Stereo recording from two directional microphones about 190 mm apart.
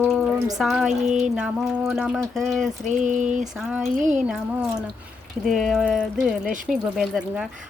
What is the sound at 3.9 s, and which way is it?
Speech, 45° right (ahead or behind).